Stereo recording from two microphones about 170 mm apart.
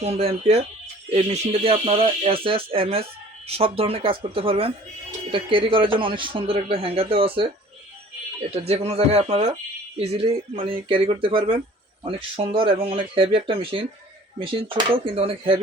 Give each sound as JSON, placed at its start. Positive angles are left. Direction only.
{"t": 0.0, "sound": "speech", "side_deg": -35}